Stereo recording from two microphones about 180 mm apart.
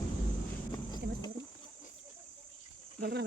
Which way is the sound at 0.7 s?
20° left (ahead or behind).